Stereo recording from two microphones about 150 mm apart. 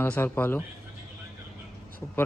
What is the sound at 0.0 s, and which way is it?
Speech, 15° left (ahead or behind).